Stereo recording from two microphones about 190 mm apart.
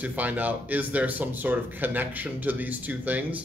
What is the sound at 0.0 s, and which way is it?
Speech, 10° right (ahead or behind).